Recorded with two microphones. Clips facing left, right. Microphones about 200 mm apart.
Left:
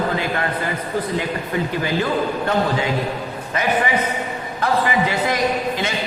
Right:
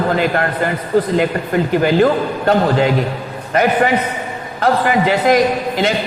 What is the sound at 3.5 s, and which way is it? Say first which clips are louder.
A man's voice: right 6 dB; 65° right (ahead or behind).